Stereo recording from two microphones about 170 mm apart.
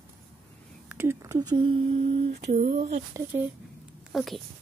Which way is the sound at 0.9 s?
15° right (ahead or behind).